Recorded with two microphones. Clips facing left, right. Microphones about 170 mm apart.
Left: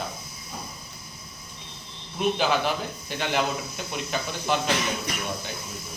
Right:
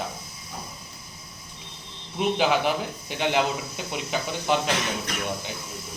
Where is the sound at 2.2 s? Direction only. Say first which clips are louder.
Right 1 dB; 15° right (ahead or behind).